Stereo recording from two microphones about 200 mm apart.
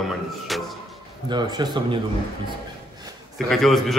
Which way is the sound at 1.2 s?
20° right (ahead or behind).